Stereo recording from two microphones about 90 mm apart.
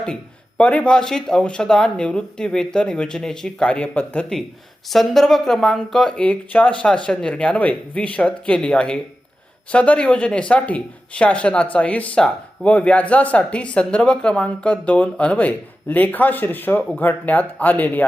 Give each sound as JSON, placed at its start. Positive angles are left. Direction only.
{"t": 0.0, "sound": "speech", "side_deg": 10}
{"t": 4.9, "sound": "speech", "side_deg": 0}